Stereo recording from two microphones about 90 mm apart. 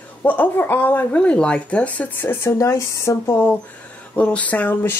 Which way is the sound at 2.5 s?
35° left (ahead or behind).